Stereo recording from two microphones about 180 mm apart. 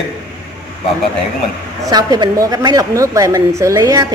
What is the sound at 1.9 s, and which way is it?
A woman's voice, 20° right (ahead or behind).